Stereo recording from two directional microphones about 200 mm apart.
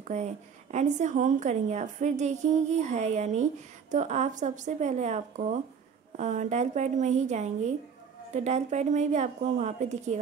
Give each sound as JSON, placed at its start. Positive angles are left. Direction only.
{"t": 0.1, "sound": "a woman's voice", "side_deg": -35}